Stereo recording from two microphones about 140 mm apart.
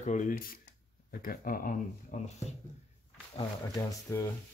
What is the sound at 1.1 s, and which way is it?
Speech, 90° left.